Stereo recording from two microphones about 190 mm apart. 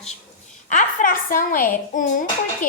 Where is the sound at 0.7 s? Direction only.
40° left (ahead or behind).